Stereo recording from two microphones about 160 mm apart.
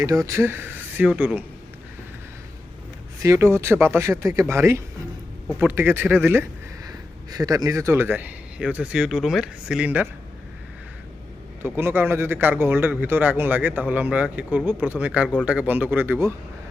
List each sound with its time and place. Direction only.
0.0 s speech: 20° right (ahead or behind)
3.2 s speech: 20° right (ahead or behind)
11.6 s speech: 15° right (ahead or behind)